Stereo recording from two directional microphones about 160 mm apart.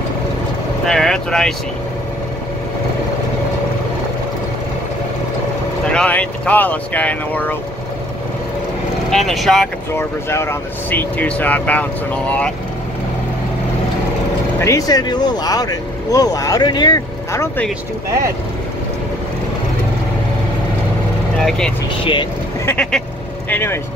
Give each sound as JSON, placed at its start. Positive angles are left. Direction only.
{"t": 0.8, "sound": "speech", "side_deg": 5}
{"t": 5.9, "sound": "speech", "side_deg": 10}
{"t": 9.1, "sound": "speech", "side_deg": 0}
{"t": 9.9, "sound": "speech", "side_deg": 15}
{"t": 14.6, "sound": "speech", "side_deg": 20}
{"t": 21.4, "sound": "speech", "side_deg": 5}
{"t": 22.0, "sound": "speech", "side_deg": 30}
{"t": 22.7, "sound": "speech", "side_deg": 5}